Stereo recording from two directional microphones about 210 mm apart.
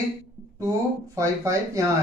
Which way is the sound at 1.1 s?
15° right (ahead or behind).